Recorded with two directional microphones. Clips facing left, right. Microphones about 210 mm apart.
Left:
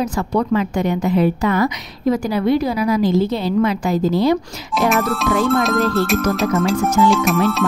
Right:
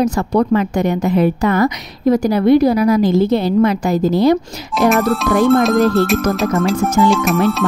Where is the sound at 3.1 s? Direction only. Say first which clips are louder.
Right 4 dB; 65° right (ahead or behind); by 4.4 s 40° right (ahead or behind).